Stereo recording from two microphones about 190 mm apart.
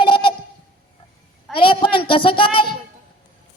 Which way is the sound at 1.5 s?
25° left (ahead or behind).